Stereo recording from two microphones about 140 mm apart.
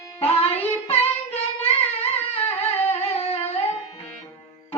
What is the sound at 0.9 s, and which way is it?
Child singing, 45° left (ahead or behind).